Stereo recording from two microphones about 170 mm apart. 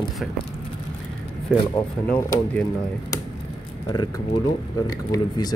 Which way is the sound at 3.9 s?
20° left (ahead or behind).